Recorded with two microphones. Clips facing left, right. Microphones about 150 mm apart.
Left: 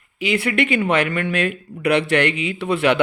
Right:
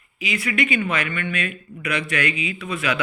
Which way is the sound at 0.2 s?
65° left (ahead or behind).